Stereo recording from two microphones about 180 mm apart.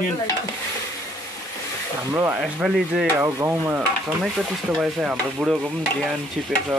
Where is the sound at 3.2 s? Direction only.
10° right (ahead or behind).